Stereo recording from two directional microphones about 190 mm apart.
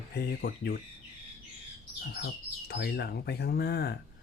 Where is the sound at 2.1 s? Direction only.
60° left (ahead or behind).